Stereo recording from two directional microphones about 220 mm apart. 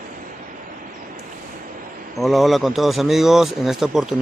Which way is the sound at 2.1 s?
Centre (ahead or behind).